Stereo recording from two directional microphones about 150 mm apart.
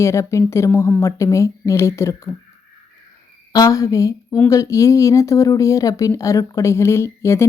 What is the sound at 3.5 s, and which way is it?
A woman's voice, 25° left (ahead or behind).